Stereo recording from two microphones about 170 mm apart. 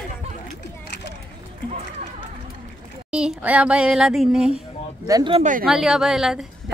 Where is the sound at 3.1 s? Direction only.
5° right (ahead or behind).